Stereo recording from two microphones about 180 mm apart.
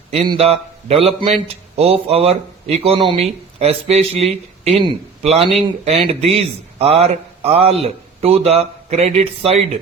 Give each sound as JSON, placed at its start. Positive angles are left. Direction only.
{"t": 0.1, "sound": "a man's voice", "side_deg": -35}